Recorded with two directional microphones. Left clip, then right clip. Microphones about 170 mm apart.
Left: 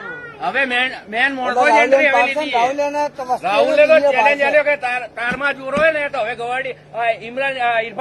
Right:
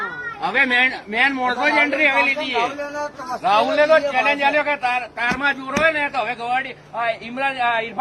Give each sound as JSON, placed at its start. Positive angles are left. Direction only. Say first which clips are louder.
{"t": 0.4, "sound": "a man's voice", "louder": "right 1 dB", "side_deg": 25}